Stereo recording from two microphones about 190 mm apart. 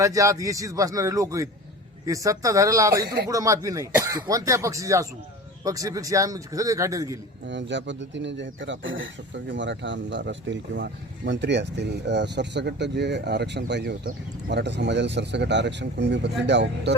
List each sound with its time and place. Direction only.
0.0 s speech: 15° right (ahead or behind)
7.4 s speech: 70° right (ahead or behind)